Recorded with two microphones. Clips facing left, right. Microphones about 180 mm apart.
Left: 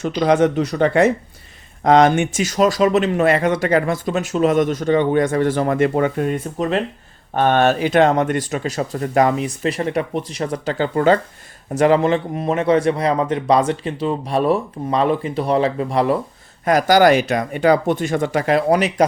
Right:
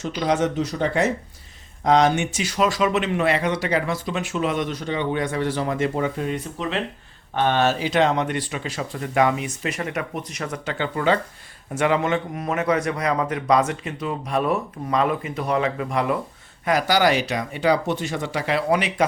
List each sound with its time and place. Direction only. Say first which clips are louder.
0.0 s a man's voice: left 6 dB; 60° left (ahead or behind); by 16.1 s 35° left (ahead or behind)
16.6 s speech: left 6 dB; 45° left (ahead or behind)